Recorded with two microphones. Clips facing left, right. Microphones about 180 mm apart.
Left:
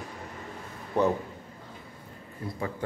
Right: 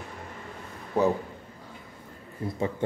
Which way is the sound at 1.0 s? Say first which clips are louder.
Right 1 dB; 10° right (ahead or behind).